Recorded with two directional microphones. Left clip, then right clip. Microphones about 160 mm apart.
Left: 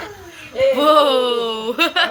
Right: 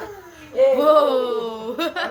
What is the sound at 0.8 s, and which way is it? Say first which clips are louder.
Speech: left 2 dB; 20° left (ahead or behind).